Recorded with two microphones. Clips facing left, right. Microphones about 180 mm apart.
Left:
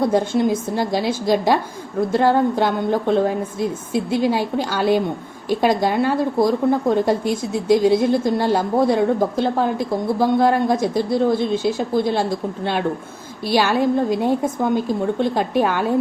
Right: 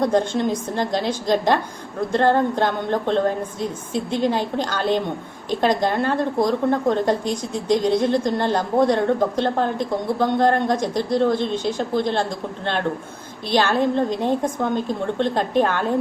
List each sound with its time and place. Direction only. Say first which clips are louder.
0.0 s a woman's voice: left 2 dB; 5° left (ahead or behind)